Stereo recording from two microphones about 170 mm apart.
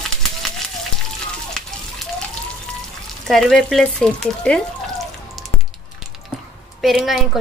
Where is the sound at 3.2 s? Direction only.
Centre (ahead or behind).